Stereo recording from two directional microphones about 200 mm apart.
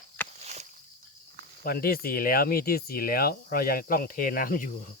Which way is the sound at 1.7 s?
50° left (ahead or behind).